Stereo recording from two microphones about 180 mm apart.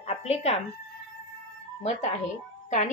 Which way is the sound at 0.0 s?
35° left (ahead or behind).